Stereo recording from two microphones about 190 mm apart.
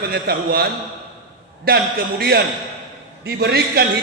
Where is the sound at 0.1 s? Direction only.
55° right (ahead or behind).